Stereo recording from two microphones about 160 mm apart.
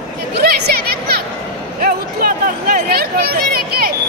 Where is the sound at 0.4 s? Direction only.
70° right (ahead or behind).